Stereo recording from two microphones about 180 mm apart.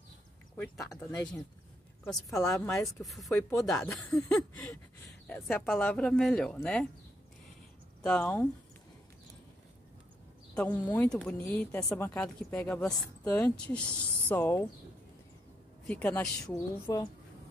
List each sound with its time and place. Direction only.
0.6 s speech: 15° left (ahead or behind)
0.9 s speech: 5° left (ahead or behind)
2.4 s speech: 15° left (ahead or behind)
2.7 s speech: centre (ahead or behind)
8.0 s speech: 5° left (ahead or behind)
10.5 s speech: 10° left (ahead or behind)
15.9 s speech: 5° left (ahead or behind)